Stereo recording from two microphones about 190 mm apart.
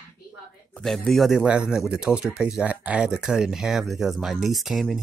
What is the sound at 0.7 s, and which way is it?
A man's voice, centre (ahead or behind).